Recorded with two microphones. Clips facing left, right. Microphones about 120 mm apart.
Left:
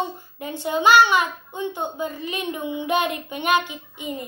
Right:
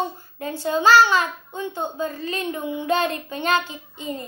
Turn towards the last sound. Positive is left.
turn(degrees=15)  # may be behind; listen again after turning